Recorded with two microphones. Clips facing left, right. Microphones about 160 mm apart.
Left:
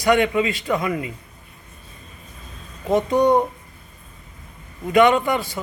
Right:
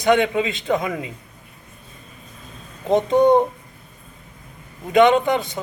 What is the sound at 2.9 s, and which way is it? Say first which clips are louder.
Speech: right 2 dB; 20° right (ahead or behind).